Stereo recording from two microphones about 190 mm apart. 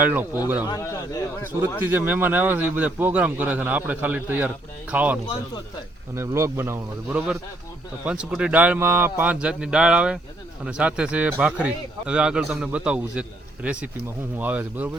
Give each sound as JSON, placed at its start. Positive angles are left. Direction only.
{"t": 0.0, "sound": "a man's voice", "side_deg": -10}
{"t": 0.7, "sound": "speech", "side_deg": 20}
{"t": 1.9, "sound": "a man's voice", "side_deg": -10}